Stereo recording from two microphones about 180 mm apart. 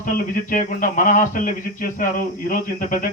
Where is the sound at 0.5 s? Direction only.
45° left (ahead or behind).